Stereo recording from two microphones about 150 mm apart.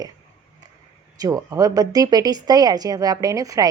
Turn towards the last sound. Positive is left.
turn(degrees=-20)  # may be behind; listen again after turning